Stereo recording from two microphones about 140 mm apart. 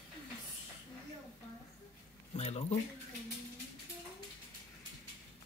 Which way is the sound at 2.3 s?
50° left (ahead or behind).